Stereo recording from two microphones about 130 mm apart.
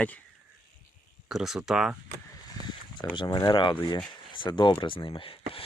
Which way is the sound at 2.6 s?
30° left (ahead or behind).